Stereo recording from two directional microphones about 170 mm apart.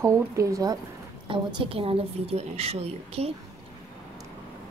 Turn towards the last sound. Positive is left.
turn(degrees=-35)  # may be behind; listen again after turning